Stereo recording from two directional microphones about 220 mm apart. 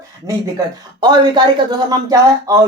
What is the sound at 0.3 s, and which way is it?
A woman's voice, 15° right (ahead or behind).